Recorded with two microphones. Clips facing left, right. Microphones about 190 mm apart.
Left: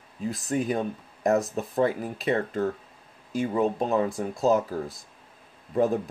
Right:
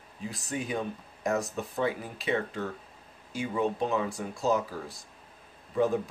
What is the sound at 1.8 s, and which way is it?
Speech, 45° left (ahead or behind).